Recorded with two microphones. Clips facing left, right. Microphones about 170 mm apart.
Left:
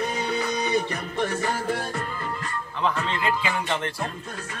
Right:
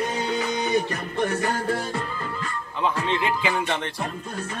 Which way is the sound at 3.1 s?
20° right (ahead or behind).